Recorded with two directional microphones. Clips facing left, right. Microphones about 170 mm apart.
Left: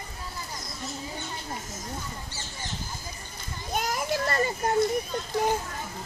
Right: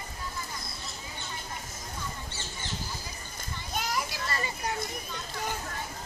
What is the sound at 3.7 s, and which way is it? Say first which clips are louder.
Children playing: left 5 dB; 50° left (ahead or behind).